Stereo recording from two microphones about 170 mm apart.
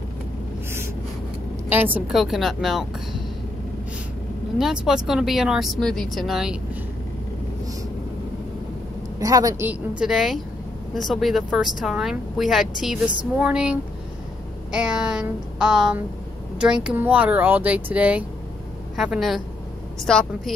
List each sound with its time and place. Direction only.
1.7 s speech: 10° right (ahead or behind)
4.6 s speech: centre (ahead or behind)
9.2 s a woman's voice: 20° right (ahead or behind)
9.7 s speech: 5° right (ahead or behind)